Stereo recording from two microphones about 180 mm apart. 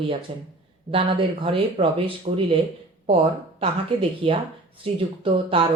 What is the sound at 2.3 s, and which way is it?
Speech, 45° right (ahead or behind).